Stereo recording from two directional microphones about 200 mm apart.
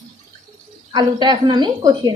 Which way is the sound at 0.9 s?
20° right (ahead or behind).